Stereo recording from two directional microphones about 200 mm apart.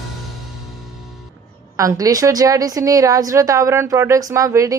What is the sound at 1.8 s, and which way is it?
A woman's voice, 15° right (ahead or behind).